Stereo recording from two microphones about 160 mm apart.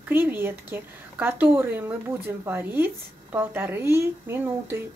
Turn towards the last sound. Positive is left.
turn(degrees=-15)  # may be behind; listen again after turning